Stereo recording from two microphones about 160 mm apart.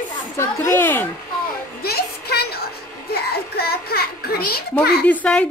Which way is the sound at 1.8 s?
80° left.